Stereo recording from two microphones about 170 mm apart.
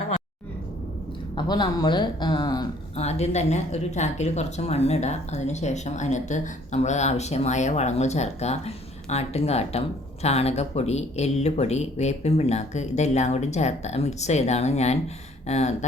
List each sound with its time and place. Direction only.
1.4 s speech: 25° left (ahead or behind)
2.9 s speech: 40° left (ahead or behind)